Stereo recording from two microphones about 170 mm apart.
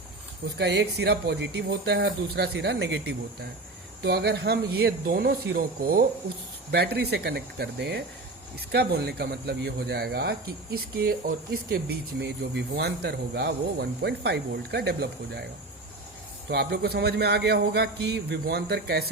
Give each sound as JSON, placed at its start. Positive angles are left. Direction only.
{"t": 0.6, "sound": "speech", "side_deg": -85}
{"t": 4.0, "sound": "speech", "side_deg": -75}
{"t": 6.7, "sound": "speech", "side_deg": -70}
{"t": 16.5, "sound": "speech", "side_deg": -70}